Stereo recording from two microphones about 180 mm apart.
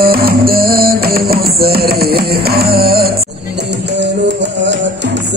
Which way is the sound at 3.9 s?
75° right (ahead or behind).